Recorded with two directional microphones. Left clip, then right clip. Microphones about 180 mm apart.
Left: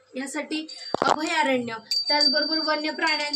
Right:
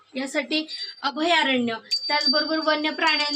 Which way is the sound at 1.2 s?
25° right (ahead or behind).